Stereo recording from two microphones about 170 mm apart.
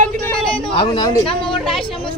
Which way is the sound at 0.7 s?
30° left (ahead or behind).